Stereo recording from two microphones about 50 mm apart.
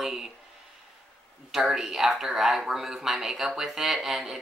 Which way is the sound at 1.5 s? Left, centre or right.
Centre.